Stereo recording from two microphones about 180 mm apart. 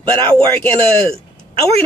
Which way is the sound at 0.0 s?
10° left (ahead or behind).